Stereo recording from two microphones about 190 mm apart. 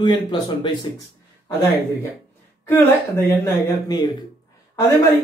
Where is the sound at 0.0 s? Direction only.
25° left (ahead or behind).